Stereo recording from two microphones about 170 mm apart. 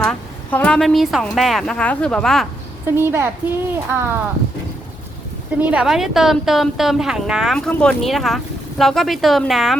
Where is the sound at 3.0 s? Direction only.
15° right (ahead or behind).